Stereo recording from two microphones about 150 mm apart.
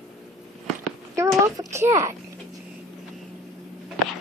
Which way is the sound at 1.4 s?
20° right (ahead or behind).